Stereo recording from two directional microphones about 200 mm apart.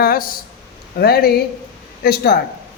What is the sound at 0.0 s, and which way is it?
A man's voice, 45° left (ahead or behind).